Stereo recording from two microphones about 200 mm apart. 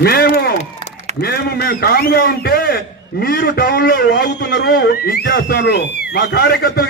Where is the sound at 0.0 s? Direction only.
50° left (ahead or behind).